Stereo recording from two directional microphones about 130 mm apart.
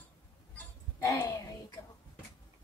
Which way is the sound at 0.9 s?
25° left (ahead or behind).